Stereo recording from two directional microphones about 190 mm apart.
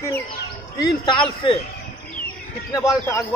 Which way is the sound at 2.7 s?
15° left (ahead or behind).